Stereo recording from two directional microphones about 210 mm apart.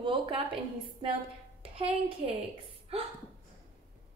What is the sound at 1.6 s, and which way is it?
Speech, 25° right (ahead or behind).